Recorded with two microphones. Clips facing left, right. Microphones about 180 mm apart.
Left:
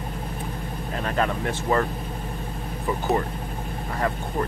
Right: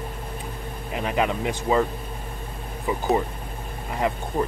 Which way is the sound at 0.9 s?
10° right (ahead or behind).